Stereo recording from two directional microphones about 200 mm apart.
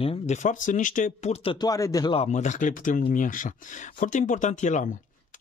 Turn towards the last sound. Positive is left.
turn(degrees=40)  # may be behind; listen again after turning